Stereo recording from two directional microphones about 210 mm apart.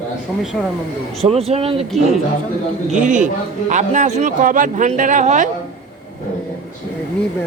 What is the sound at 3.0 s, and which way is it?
A man's voice, 40° right (ahead or behind).